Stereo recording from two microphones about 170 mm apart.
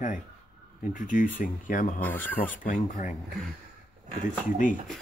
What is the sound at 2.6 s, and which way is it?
Speech, 45° left (ahead or behind).